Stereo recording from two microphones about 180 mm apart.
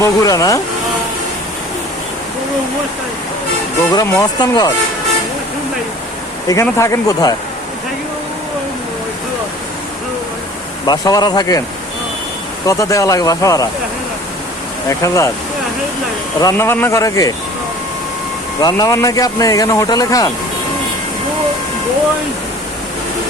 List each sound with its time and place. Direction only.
0.0 s speech: 20° left (ahead or behind)
3.9 s speech: 20° left (ahead or behind)
6.5 s speech: 15° left (ahead or behind)
10.8 s speech: 20° left (ahead or behind)
12.6 s speech: 15° left (ahead or behind)
14.8 s speech: 15° left (ahead or behind)
16.4 s speech: 15° left (ahead or behind)
18.6 s speech: 20° left (ahead or behind)